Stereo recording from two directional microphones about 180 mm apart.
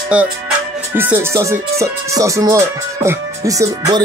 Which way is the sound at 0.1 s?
5° right (ahead or behind).